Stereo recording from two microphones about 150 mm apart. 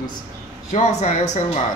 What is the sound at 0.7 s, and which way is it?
Speech, 50° left (ahead or behind).